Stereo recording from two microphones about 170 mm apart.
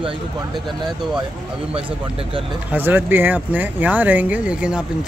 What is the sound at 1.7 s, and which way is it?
Speech, 35° right (ahead or behind).